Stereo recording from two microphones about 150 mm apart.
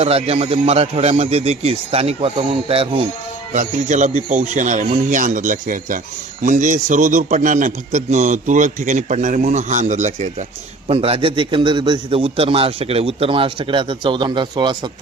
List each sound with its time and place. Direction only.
0.0 s a man's voice: 40° right (ahead or behind)
3.5 s a man's voice: 55° right (ahead or behind)
10.8 s a man's voice: 40° right (ahead or behind)